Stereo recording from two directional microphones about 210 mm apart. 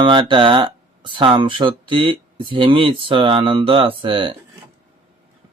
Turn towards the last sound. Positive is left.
turn(degrees=-25)  # may be behind; listen again after turning